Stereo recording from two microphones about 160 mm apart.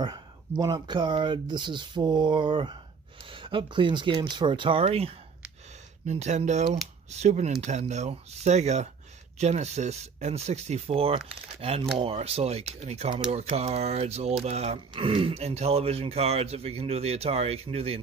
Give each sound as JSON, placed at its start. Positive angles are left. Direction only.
{"t": 0.0, "sound": "speech", "side_deg": -25}